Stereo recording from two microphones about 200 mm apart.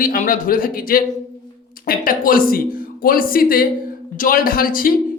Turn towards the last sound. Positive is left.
turn(degrees=45)  # may be behind; listen again after turning